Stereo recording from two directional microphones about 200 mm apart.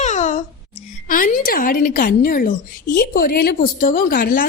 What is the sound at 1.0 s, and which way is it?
A woman's voice, 40° left (ahead or behind).